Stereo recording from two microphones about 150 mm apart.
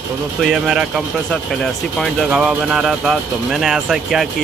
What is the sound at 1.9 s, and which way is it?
Speech, centre (ahead or behind).